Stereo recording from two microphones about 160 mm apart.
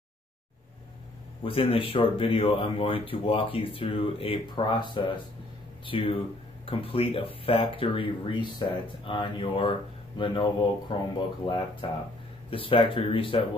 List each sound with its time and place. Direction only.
1.4 s speech: 35° left (ahead or behind)